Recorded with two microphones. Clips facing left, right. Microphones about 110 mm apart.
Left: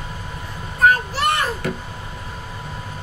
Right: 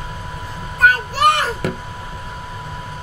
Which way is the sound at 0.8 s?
80° right.